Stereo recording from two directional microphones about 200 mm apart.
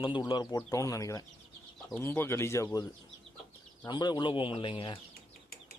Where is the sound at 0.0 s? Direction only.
25° left (ahead or behind).